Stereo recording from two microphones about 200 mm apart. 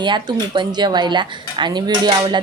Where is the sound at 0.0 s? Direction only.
20° right (ahead or behind).